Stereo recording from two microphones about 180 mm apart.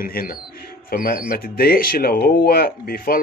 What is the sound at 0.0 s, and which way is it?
Speech, 55° left (ahead or behind).